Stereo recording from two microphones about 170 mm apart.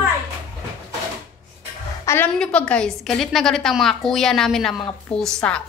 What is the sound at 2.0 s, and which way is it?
A woman's voice, 15° left (ahead or behind).